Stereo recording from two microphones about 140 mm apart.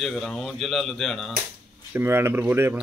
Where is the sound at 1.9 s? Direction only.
15° right (ahead or behind).